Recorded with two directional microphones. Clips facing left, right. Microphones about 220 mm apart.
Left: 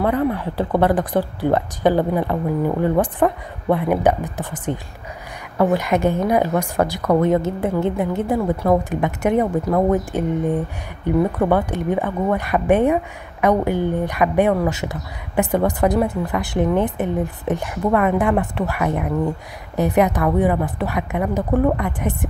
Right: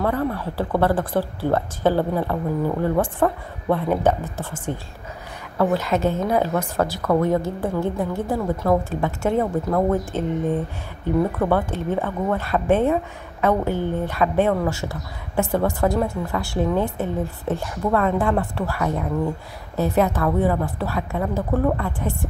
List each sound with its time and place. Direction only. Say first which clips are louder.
0.0 s speech: left 3 dB; 15° left (ahead or behind)